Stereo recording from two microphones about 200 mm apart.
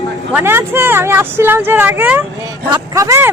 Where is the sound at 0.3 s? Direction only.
10° right (ahead or behind).